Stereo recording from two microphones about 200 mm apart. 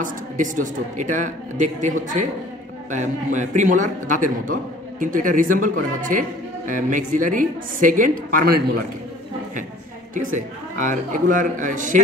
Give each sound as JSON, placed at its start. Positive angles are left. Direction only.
{"t": 0.0, "sound": "speech", "side_deg": -40}
{"t": 3.3, "sound": "speech", "side_deg": -40}
{"t": 10.1, "sound": "speech", "side_deg": -40}